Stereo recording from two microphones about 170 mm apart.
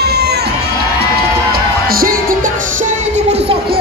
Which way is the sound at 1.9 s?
55° right (ahead or behind).